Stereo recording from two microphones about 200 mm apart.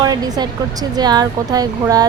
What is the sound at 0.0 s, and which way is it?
Speech, 20° right (ahead or behind).